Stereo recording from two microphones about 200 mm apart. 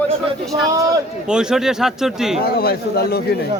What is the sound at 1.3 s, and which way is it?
Speech, 5° right (ahead or behind).